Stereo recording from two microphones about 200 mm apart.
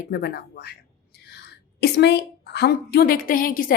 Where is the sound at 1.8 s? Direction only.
55° left (ahead or behind).